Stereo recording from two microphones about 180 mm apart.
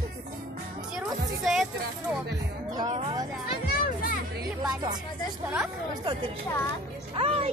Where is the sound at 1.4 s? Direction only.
Centre (ahead or behind).